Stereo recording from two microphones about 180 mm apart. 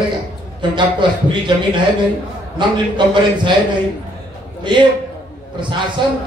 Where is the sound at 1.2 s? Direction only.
25° right (ahead or behind).